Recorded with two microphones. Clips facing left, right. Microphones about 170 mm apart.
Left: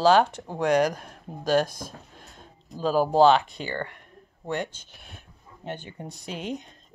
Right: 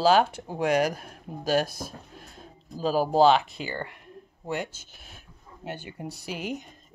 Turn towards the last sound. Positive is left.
turn(degrees=-5)  # may be behind; listen again after turning